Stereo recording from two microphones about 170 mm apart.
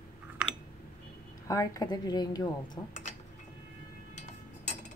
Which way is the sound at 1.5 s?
20° left (ahead or behind).